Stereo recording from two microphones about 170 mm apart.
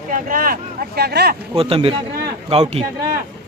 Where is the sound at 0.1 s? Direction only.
55° right (ahead or behind).